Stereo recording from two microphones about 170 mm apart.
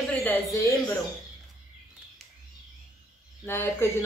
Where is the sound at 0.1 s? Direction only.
10° left (ahead or behind).